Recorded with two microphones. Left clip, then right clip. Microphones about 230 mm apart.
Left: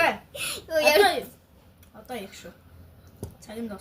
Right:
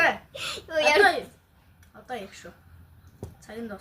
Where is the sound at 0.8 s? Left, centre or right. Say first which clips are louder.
Left 1 dB; centre.